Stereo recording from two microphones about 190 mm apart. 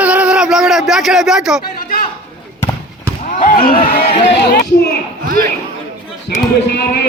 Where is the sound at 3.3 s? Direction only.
45° left (ahead or behind).